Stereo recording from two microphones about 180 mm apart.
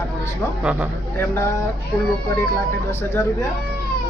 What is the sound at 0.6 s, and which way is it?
Speech, 5° right (ahead or behind).